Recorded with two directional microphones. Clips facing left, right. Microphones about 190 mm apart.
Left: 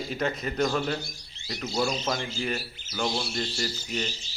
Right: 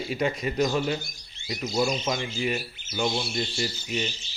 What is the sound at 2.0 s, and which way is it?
Speech, 5° right (ahead or behind).